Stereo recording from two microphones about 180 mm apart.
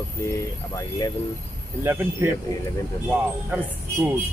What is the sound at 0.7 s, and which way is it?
Speech, 20° left (ahead or behind).